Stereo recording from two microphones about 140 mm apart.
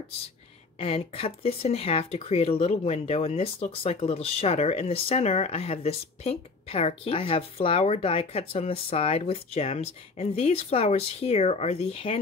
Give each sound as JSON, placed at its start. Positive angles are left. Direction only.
{"t": 0.7, "sound": "speech", "side_deg": 45}